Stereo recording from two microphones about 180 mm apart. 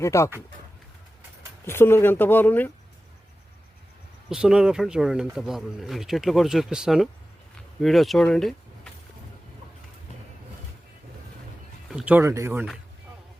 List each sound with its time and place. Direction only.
0.0 s speech: 15° left (ahead or behind)
1.6 s speech: 15° left (ahead or behind)
4.3 s speech: 5° right (ahead or behind)
11.9 s speech: 5° right (ahead or behind)